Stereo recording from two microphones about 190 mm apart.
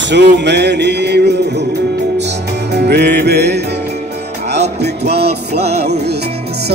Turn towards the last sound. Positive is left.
turn(degrees=-60)  # may be behind; listen again after turning